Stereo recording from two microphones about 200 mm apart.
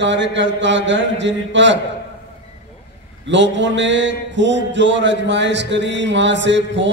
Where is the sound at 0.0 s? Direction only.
65° right (ahead or behind).